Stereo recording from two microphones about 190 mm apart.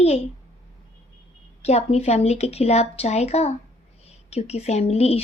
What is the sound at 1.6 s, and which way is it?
Speech, 35° left (ahead or behind).